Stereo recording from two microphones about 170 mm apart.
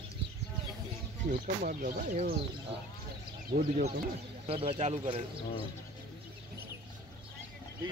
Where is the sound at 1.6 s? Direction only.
55° right (ahead or behind).